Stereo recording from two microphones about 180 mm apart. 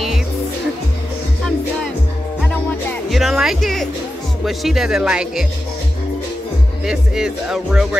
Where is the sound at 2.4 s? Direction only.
5° left (ahead or behind).